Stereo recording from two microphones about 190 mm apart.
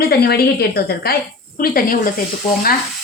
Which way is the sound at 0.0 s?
55° left (ahead or behind).